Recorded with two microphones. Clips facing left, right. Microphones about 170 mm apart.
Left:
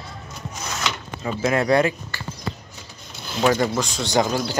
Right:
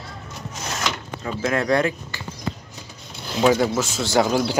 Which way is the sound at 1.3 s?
10° left (ahead or behind).